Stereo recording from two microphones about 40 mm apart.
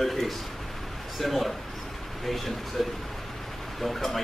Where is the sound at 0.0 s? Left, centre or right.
Centre.